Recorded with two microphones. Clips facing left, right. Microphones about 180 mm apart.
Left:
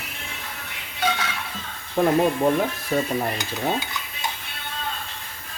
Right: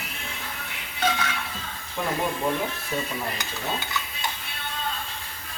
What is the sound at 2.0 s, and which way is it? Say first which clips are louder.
Speech: left 9 dB; 40° left (ahead or behind).